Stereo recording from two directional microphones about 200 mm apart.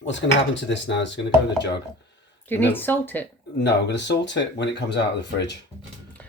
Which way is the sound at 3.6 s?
60° left (ahead or behind).